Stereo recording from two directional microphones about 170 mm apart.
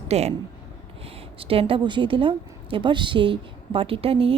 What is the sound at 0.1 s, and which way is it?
Speech, 40° right (ahead or behind).